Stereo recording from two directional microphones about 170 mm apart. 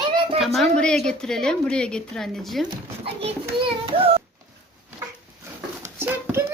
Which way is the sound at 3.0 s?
35° right (ahead or behind).